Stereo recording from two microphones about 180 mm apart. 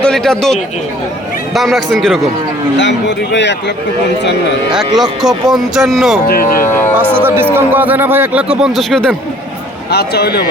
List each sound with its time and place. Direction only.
0.0 s a man's voice: 5° left (ahead or behind)
5.2 s speech: centre (ahead or behind)
6.7 s speech: 15° left (ahead or behind)
6.9 s a man's voice: 10° right (ahead or behind)
9.9 s a man's voice: 65° left (ahead or behind)